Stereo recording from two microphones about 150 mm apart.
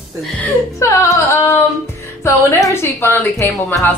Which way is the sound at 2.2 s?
20° left (ahead or behind).